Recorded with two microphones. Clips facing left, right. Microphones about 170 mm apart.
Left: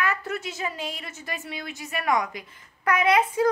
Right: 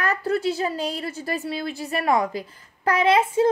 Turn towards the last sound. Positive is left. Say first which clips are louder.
# right 3 dB
turn(degrees=-25)  # may be behind; listen again after turning